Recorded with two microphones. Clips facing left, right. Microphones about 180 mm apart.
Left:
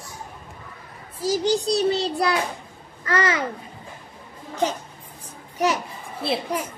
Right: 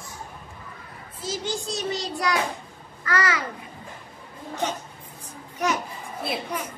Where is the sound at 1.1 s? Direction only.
40° left (ahead or behind).